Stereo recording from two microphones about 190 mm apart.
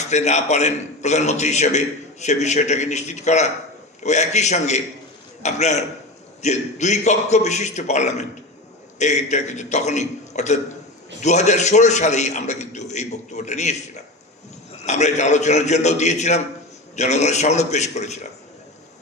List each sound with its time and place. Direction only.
0.0 s a man's voice: 35° left (ahead or behind)